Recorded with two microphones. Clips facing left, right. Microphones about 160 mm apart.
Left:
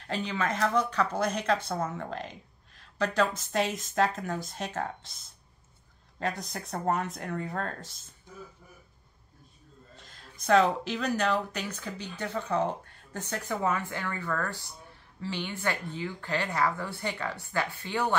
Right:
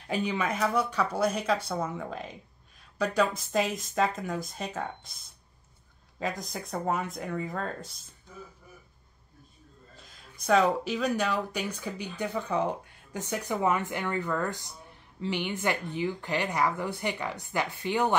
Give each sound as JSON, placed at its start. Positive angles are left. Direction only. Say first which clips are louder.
{"t": 0.0, "sound": "a woman's voice", "louder": "right 2 dB", "side_deg": -10}
{"t": 6.1, "sound": "speech", "louder": "even", "side_deg": 0}
{"t": 10.4, "sound": "a woman's voice", "louder": "even", "side_deg": 0}